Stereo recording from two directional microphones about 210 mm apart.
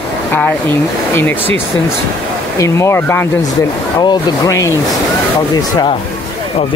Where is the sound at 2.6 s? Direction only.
15° left (ahead or behind).